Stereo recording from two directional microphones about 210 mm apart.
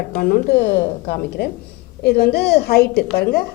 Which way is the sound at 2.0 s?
50° left (ahead or behind).